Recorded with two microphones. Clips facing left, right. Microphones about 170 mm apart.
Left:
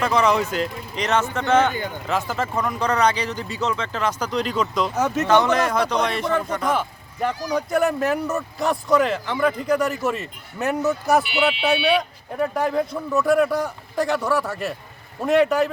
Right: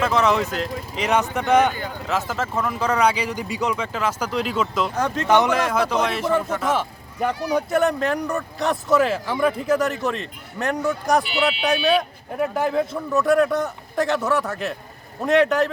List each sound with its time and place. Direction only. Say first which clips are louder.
0.0 s speech: even; centre (ahead or behind)
2.0 s speech: even; centre (ahead or behind)
4.9 s speech: left 3 dB; 10° left (ahead or behind)
5.3 s speech: even; 15° right (ahead or behind)
5.5 s speech: even; centre (ahead or behind)